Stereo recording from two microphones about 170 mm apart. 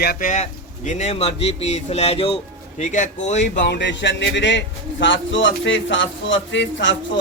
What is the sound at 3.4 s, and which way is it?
Speech, 85° left.